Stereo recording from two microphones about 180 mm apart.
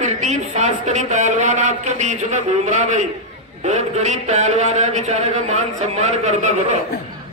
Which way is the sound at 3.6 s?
40° right (ahead or behind).